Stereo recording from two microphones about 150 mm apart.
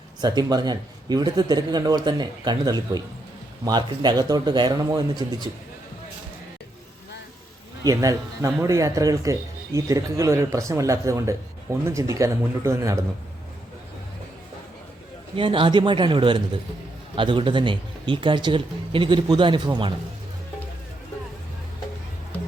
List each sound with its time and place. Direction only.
0.2 s speech: 25° right (ahead or behind)
7.9 s speech: 25° right (ahead or behind)
15.4 s speech: 35° right (ahead or behind)